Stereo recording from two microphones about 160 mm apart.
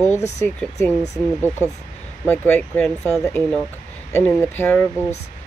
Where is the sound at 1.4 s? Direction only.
15° left (ahead or behind).